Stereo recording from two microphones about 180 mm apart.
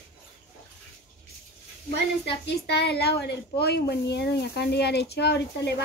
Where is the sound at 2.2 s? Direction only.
65° left (ahead or behind).